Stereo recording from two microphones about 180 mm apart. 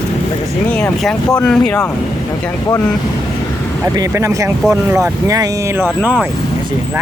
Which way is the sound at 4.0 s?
15° right (ahead or behind).